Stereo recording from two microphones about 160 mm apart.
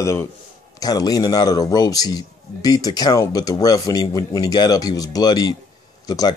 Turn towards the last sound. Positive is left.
turn(degrees=25)  # may be behind; listen again after turning